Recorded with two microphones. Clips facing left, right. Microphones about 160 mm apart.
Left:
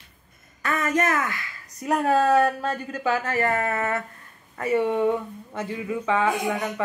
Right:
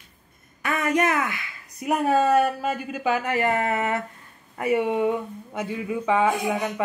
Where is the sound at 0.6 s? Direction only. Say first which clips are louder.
Right 1 dB; 15° right (ahead or behind).